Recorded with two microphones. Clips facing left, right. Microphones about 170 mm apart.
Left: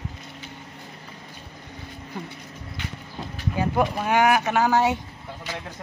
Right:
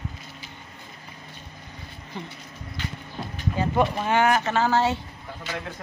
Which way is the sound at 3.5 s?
10° left (ahead or behind).